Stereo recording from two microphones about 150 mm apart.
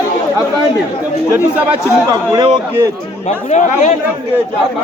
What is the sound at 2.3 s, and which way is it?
Speech, 25° right (ahead or behind).